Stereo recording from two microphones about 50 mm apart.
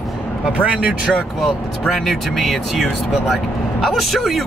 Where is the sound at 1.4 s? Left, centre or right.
Centre.